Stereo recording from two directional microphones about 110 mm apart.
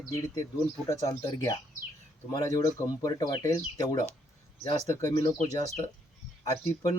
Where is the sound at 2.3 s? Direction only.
35° left (ahead or behind).